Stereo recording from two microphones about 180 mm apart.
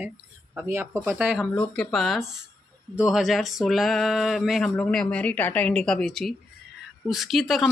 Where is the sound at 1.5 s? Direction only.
5° left (ahead or behind).